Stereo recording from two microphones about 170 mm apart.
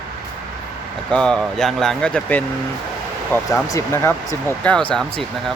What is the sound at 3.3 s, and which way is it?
Speech, 15° left (ahead or behind).